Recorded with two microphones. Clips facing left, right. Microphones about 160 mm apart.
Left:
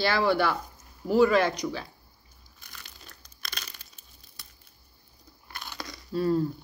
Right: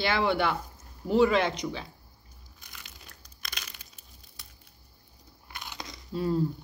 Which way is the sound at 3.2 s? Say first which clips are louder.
Left 2 dB; 15° right (ahead or behind).